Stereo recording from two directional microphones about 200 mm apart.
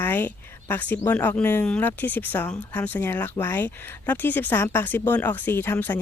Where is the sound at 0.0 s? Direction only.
10° left (ahead or behind).